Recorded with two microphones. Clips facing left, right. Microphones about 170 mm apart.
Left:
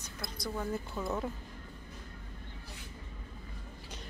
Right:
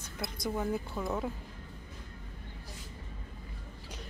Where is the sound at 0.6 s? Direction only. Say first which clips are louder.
Right 1 dB; 10° right (ahead or behind).